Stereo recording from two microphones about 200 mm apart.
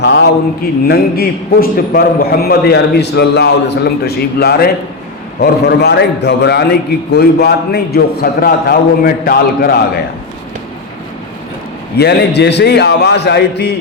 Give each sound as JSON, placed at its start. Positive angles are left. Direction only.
{"t": 0.0, "sound": "a man's voice", "side_deg": 55}
{"t": 11.9, "sound": "a man's voice", "side_deg": 55}